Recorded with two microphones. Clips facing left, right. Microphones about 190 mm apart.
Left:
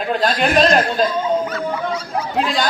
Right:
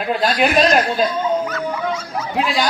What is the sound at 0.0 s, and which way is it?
Speech, 5° right (ahead or behind).